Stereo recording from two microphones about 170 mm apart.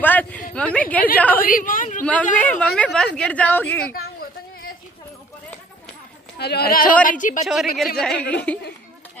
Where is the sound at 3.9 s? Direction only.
60° left (ahead or behind).